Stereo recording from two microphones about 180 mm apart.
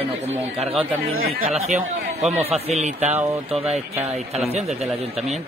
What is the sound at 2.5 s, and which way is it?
Speech, 40° right (ahead or behind).